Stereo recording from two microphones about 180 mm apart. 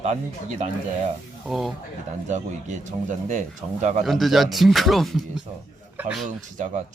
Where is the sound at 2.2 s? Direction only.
40° right (ahead or behind).